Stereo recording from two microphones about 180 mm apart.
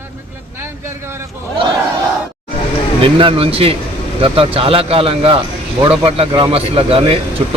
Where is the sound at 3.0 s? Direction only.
30° right (ahead or behind).